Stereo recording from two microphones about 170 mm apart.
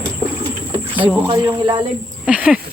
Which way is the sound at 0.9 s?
10° right (ahead or behind).